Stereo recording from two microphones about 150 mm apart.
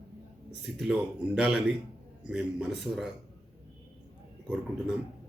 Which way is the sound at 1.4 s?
5° right (ahead or behind).